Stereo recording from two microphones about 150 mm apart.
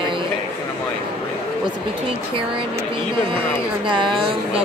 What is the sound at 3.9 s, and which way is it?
Speech, 35° right (ahead or behind).